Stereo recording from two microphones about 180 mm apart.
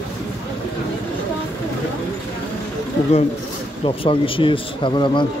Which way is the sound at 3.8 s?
30° left (ahead or behind).